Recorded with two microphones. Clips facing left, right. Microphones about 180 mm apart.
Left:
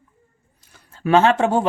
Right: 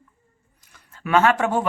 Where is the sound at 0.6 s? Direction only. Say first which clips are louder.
Left 8 dB; 30° left (ahead or behind).